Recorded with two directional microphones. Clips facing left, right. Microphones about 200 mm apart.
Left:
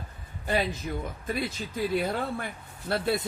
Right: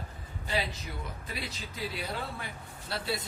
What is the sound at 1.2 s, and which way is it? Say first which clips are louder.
A man's voice: left 9 dB; 50° left (ahead or behind).